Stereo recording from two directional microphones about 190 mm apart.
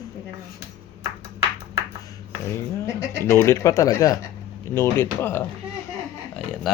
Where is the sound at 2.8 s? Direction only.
15° left (ahead or behind).